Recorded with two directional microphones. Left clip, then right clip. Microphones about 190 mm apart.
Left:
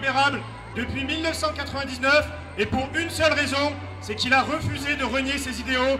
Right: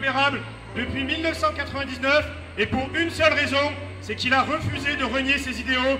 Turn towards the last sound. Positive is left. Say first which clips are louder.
# even
turn(degrees=30)  # may be behind; listen again after turning